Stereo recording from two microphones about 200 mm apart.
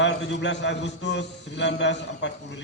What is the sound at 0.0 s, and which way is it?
A man's voice, 65° left (ahead or behind).